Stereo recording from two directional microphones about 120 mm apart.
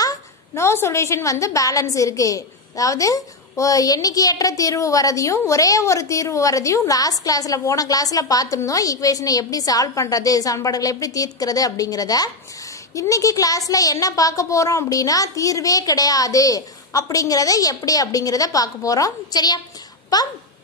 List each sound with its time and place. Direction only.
0.0 s a woman's voice: 25° left (ahead or behind)